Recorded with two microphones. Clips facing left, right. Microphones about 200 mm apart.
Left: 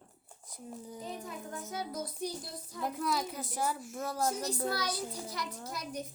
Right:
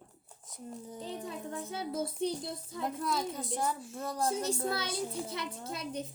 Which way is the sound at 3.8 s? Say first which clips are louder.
Left 1 dB; 30° right (ahead or behind).